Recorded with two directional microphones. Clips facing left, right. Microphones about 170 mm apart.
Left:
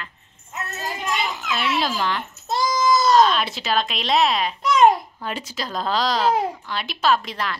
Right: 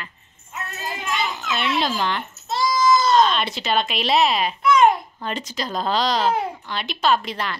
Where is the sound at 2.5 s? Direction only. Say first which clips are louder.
Even; 45° left (ahead or behind).